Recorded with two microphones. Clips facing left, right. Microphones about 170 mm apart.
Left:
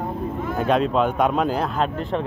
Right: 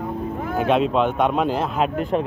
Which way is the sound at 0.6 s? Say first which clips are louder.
Right 1 dB; 5° right (ahead or behind).